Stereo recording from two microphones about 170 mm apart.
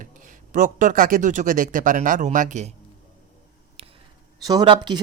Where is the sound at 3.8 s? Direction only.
35° right (ahead or behind).